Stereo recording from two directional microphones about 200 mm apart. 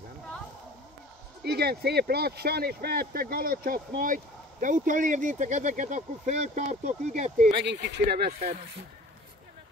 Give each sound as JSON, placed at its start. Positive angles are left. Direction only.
{"t": 1.4, "sound": "speech", "side_deg": -55}
{"t": 7.6, "sound": "speech", "side_deg": -60}